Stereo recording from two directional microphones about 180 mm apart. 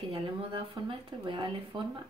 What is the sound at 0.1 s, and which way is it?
Speech, 30° right (ahead or behind).